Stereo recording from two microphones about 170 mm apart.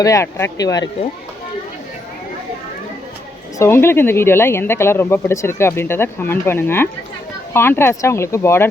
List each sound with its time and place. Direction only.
0.0 s speech: 20° left (ahead or behind)
3.6 s speech: 15° left (ahead or behind)